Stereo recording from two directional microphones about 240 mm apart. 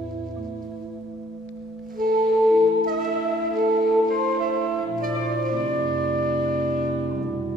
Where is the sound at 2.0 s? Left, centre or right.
Right.